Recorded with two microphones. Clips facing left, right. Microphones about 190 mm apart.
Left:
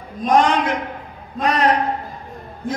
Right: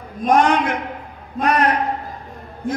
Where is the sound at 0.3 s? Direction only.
60° right (ahead or behind).